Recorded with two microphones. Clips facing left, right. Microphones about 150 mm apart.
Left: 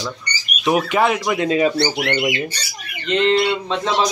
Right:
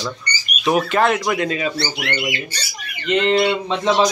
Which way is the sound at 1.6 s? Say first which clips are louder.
Left 6 dB; 35° left (ahead or behind).